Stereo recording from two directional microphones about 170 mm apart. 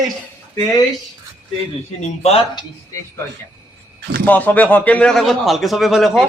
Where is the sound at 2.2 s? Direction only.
30° left (ahead or behind).